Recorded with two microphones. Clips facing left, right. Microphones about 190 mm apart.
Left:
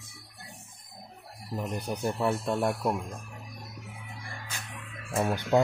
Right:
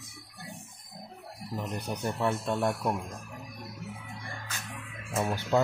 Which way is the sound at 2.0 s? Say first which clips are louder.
Left 1 dB; 10° left (ahead or behind).